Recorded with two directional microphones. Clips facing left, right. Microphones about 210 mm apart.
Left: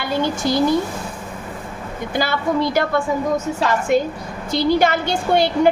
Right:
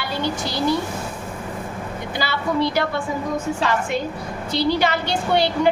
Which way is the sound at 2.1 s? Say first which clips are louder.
Left 3 dB; 50° left (ahead or behind).